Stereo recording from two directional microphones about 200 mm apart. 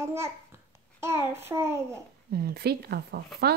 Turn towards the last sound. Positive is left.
turn(degrees=-50)  # may be behind; listen again after turning